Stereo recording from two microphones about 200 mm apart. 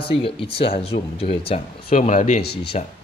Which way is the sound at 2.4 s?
55° left (ahead or behind).